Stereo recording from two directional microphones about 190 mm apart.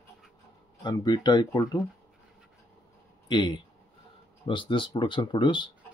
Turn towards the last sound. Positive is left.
turn(degrees=25)  # may be behind; listen again after turning